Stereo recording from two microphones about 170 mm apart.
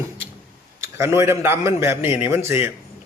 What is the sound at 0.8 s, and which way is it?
A man's voice, 15° right (ahead or behind).